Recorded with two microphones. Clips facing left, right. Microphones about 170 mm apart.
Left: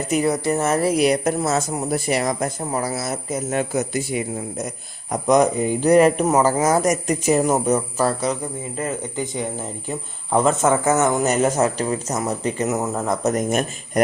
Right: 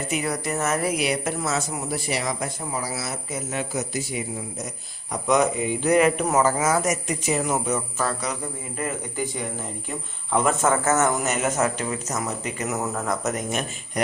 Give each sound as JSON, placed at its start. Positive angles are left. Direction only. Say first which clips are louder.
{"t": 0.3, "sound": "speech", "louder": "left 5 dB", "side_deg": 30}
{"t": 5.3, "sound": "speech", "louder": "left 4 dB", "side_deg": 40}
{"t": 8.8, "sound": "speech", "louder": "left 2 dB", "side_deg": 20}
{"t": 10.6, "sound": "speech", "louder": "left 3 dB", "side_deg": 15}
{"t": 11.2, "sound": "speech", "louder": "left 5 dB", "side_deg": 35}
{"t": 13.3, "sound": "speech", "louder": "left 7 dB", "side_deg": 45}